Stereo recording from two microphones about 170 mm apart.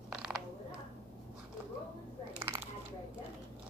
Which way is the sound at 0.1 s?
Centre (ahead or behind).